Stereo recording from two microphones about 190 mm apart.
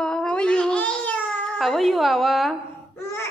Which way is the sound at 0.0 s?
5° left (ahead or behind).